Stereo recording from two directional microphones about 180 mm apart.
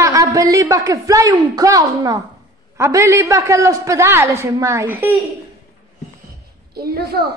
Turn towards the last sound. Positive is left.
turn(degrees=-60)  # may be behind; listen again after turning